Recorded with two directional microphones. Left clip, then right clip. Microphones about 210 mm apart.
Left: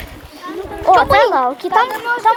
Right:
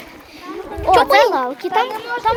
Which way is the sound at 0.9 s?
20° right (ahead or behind).